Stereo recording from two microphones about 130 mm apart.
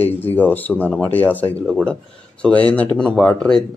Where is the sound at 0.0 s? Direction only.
15° left (ahead or behind).